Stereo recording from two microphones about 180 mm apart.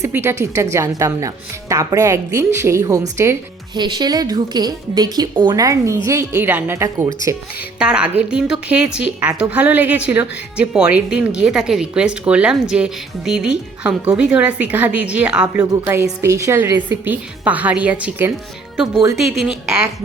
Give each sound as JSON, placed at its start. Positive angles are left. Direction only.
{"t": 0.0, "sound": "a woman's voice", "side_deg": -15}
{"t": 7.8, "sound": "a woman's voice", "side_deg": -5}
{"t": 15.7, "sound": "a woman's voice", "side_deg": -15}